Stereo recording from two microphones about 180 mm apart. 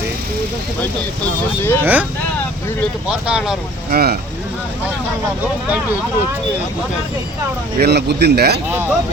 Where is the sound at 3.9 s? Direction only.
55° right (ahead or behind).